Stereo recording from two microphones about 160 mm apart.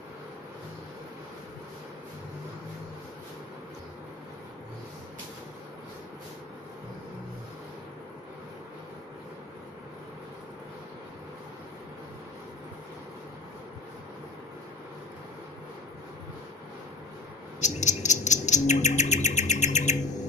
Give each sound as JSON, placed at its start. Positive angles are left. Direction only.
{"t": 17.6, "sound": "bird", "side_deg": 45}